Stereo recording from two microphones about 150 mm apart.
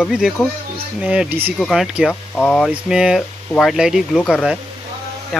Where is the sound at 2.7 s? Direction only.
5° right (ahead or behind).